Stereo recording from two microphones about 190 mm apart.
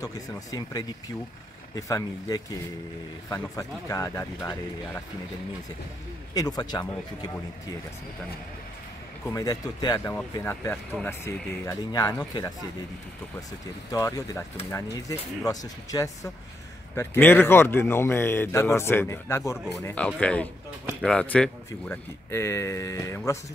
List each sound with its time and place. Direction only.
0.0 s a man's voice: 20° left (ahead or behind)
6.3 s a man's voice: 20° left (ahead or behind)
9.3 s a man's voice: 20° left (ahead or behind)
13.9 s speech: 15° left (ahead or behind)